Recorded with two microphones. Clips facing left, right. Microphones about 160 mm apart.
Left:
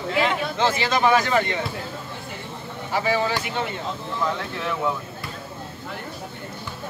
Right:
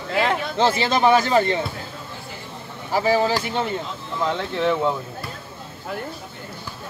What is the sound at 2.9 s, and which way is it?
Speech, 35° right (ahead or behind).